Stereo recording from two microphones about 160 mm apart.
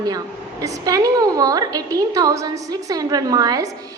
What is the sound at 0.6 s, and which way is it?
A woman's voice, 20° right (ahead or behind).